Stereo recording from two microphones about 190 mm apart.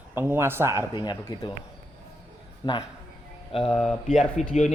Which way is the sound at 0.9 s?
25° left (ahead or behind).